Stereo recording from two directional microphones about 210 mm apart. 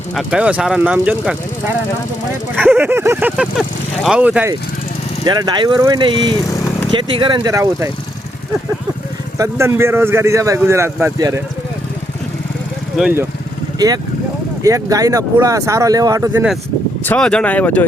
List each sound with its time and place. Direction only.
0.2 s speech: 5° right (ahead or behind)
2.6 s speech: 10° right (ahead or behind)
5.2 s speech: 20° right (ahead or behind)
9.4 s a man's voice: 15° right (ahead or behind)
13.0 s a man's voice: 5° right (ahead or behind)
13.7 s a man's voice: 20° right (ahead or behind)
17.1 s speech: 5° left (ahead or behind)